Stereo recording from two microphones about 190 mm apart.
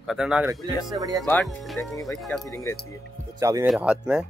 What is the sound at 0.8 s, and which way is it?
Speech, 20° right (ahead or behind).